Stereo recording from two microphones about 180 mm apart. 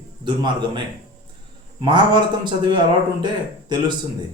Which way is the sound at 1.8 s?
25° right (ahead or behind).